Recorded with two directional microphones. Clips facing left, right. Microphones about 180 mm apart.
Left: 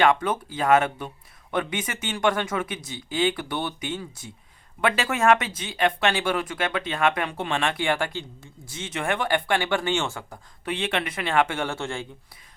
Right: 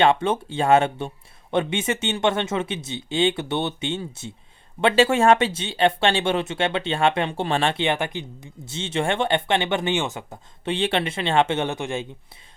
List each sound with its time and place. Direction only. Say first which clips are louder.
0.0 s speech: right 2 dB; 25° right (ahead or behind)
10.7 s speech: right 4 dB; 30° right (ahead or behind)